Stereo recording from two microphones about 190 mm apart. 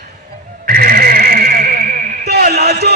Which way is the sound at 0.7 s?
50° right (ahead or behind).